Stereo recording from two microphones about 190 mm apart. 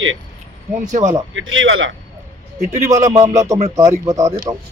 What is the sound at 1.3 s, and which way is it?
Speech, 90° right.